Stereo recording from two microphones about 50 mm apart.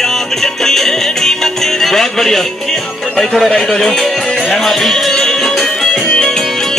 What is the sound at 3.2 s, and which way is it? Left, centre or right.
Speech, centre.